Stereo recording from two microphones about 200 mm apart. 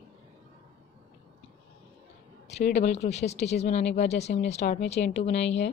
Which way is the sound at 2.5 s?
35° left (ahead or behind).